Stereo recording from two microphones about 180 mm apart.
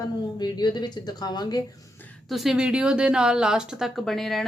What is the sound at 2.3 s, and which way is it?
A woman's voice, centre (ahead or behind).